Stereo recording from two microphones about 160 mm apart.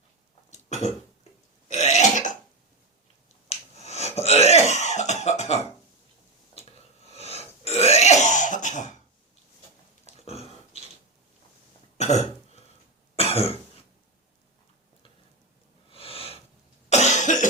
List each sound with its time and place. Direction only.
0.5 s cough: 45° left (ahead or behind)
1.6 s burping: 45° left (ahead or behind)
3.5 s cough: 40° left (ahead or behind)
6.5 s burping: 40° left (ahead or behind)
10.1 s a sound: 40° left (ahead or behind)
11.9 s throat clearing: 45° left (ahead or behind)
13.1 s cough: 40° left (ahead or behind)
15.9 s a sound: 35° left (ahead or behind)
16.9 s cough: 45° left (ahead or behind)